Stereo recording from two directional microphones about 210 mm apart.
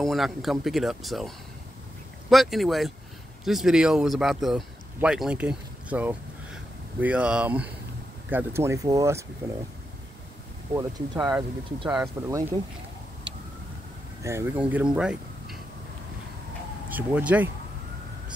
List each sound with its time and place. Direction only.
0.0 s speech: centre (ahead or behind)
10.7 s speech: 15° right (ahead or behind)
14.2 s speech: 10° right (ahead or behind)
16.9 s speech: 5° right (ahead or behind)